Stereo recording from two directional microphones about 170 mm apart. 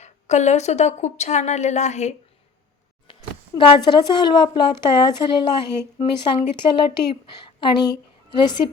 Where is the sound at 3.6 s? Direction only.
30° left (ahead or behind).